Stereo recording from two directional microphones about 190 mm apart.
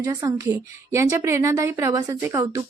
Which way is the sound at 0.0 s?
15° right (ahead or behind).